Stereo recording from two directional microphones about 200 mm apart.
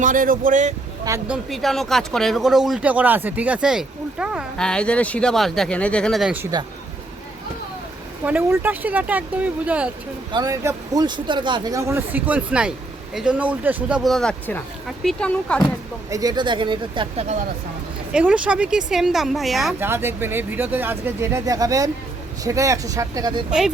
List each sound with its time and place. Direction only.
0.0 s speech: 40° right (ahead or behind)
1.0 s speech: 15° right (ahead or behind)
1.5 s speech: centre (ahead or behind)
8.2 s speech: 10° right (ahead or behind)
10.3 s speech: 15° right (ahead or behind); by 15.6 s 5° left (ahead or behind)
16.0 s speech: 15° right (ahead or behind)
18.1 s speech: 5° right (ahead or behind)
19.8 s speech: 10° right (ahead or behind)
23.5 s speech: 5° right (ahead or behind)